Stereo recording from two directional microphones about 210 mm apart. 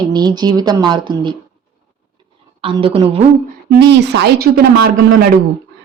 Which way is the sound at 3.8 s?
55° right (ahead or behind).